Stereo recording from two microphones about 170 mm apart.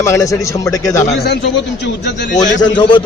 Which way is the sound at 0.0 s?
20° left (ahead or behind).